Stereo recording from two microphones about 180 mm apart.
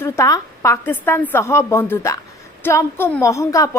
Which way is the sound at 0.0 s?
15° left (ahead or behind).